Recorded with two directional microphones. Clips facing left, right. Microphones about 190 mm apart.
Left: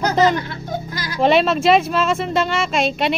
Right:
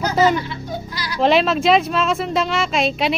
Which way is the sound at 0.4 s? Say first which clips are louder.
Left 1 dB; 50° left (ahead or behind).